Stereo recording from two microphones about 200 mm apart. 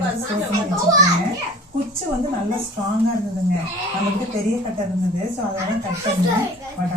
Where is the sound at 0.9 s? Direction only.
15° right (ahead or behind).